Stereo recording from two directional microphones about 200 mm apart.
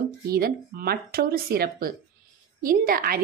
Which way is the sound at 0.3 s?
45° right (ahead or behind).